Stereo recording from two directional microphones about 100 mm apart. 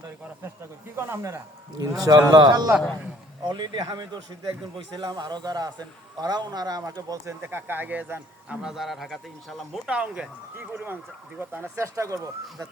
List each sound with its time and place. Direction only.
0.9 s speech: 25° right (ahead or behind)
1.8 s speech: 40° right (ahead or behind)
6.9 s speech: 30° right (ahead or behind)
8.6 s speech: 5° right (ahead or behind)
9.8 s speech: 10° right (ahead or behind); by 12.6 s 35° right (ahead or behind)